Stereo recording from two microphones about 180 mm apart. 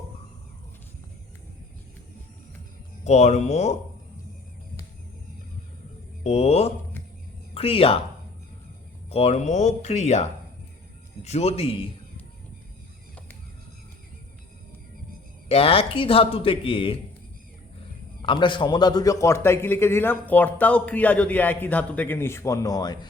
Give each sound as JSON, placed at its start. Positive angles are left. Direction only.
{"t": 3.0, "sound": "a man's voice", "side_deg": 40}
{"t": 6.2, "sound": "a man's voice", "side_deg": 35}
{"t": 9.0, "sound": "a man's voice", "side_deg": 35}
{"t": 15.4, "sound": "a man's voice", "side_deg": 30}
{"t": 18.2, "sound": "a man's voice", "side_deg": 25}